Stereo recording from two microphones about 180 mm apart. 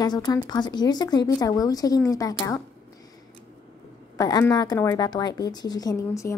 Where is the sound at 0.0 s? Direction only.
20° left (ahead or behind).